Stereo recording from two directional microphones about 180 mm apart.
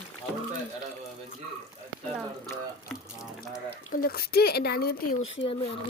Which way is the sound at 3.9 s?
55° left (ahead or behind).